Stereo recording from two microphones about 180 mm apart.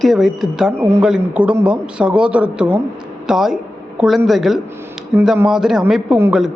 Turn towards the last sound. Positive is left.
turn(degrees=-5)  # may be behind; listen again after turning